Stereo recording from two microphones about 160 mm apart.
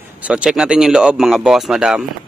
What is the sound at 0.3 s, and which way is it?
Speech, 5° right (ahead or behind).